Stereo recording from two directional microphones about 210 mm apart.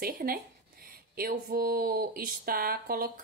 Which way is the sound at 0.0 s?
45° right (ahead or behind).